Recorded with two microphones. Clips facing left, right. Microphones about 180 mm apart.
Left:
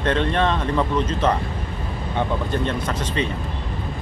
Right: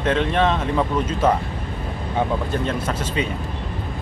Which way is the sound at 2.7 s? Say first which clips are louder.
Right 1 dB; 10° right (ahead or behind).